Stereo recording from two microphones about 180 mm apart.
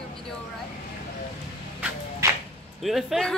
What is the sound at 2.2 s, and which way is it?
Whip, 15° right (ahead or behind).